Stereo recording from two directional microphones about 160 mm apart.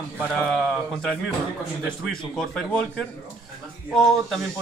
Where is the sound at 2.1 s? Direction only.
Centre (ahead or behind).